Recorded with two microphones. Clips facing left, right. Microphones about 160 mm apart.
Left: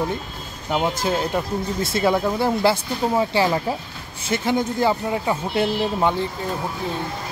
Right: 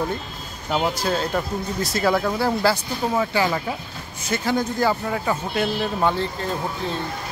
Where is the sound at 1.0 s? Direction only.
15° left (ahead or behind).